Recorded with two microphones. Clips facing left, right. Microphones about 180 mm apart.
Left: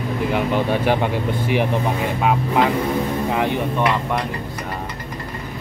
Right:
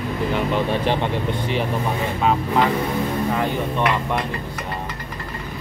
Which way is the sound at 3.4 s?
15° left (ahead or behind).